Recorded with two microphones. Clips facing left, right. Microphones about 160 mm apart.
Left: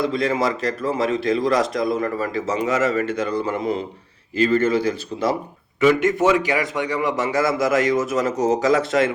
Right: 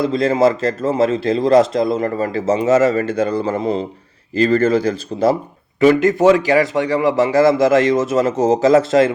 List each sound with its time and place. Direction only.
0.0 s a man's voice: 30° right (ahead or behind)